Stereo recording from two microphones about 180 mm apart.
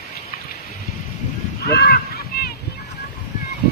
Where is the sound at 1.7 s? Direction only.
60° left (ahead or behind).